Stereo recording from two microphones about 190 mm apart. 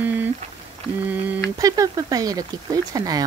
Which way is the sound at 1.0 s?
10° right (ahead or behind).